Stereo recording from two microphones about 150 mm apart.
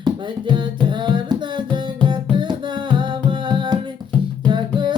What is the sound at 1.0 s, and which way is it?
Music, 30° right (ahead or behind).